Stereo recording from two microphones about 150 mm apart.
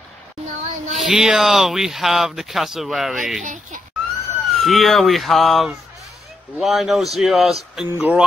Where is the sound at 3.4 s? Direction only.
55° right (ahead or behind).